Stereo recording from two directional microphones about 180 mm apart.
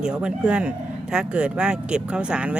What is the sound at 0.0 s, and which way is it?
Speech, 5° right (ahead or behind).